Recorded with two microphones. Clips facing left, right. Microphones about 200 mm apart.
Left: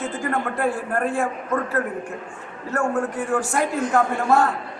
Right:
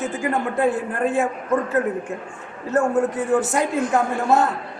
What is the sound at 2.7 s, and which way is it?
Speech, 20° right (ahead or behind).